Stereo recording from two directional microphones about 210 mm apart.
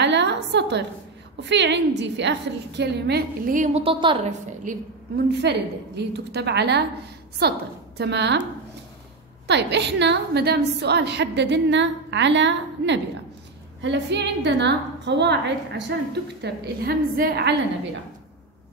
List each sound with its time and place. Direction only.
0.0 s a sound: 55° right (ahead or behind)
1.4 s a woman's voice: 55° right (ahead or behind); by 4.3 s 25° right (ahead or behind)
4.6 s a woman's voice: 50° right (ahead or behind)
9.5 s a woman's voice: 55° right (ahead or behind)